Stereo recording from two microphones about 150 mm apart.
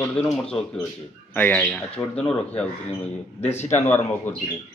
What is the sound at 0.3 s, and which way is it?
A man's voice, 5° left (ahead or behind).